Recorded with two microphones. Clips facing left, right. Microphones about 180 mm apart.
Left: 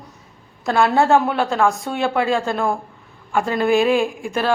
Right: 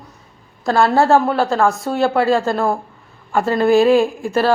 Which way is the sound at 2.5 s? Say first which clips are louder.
Right 3 dB; centre (ahead or behind).